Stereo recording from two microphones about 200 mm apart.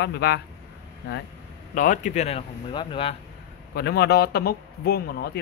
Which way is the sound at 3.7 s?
55° left (ahead or behind).